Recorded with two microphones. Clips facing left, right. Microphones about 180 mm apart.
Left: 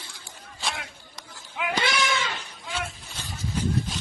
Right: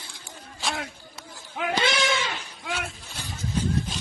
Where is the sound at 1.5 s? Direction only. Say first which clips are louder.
Right 2 dB; 40° right (ahead or behind).